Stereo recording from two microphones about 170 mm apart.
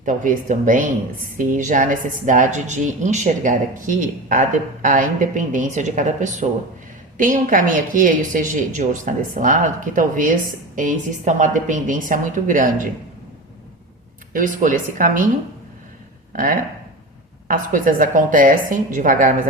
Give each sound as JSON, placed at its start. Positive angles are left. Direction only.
{"t": 0.0, "sound": "speech", "side_deg": -50}
{"t": 14.3, "sound": "speech", "side_deg": -50}
{"t": 16.3, "sound": "speech", "side_deg": -55}